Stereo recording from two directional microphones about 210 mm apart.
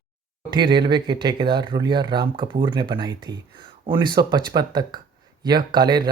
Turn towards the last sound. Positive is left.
turn(degrees=-20)  # may be behind; listen again after turning